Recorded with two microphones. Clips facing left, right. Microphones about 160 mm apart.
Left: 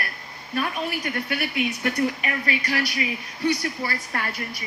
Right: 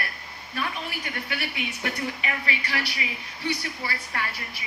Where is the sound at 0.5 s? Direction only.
45° left (ahead or behind).